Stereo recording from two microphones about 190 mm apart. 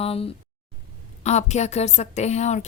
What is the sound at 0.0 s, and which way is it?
Speech, 30° left (ahead or behind).